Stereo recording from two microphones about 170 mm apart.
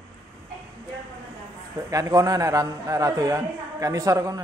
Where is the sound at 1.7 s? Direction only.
20° right (ahead or behind).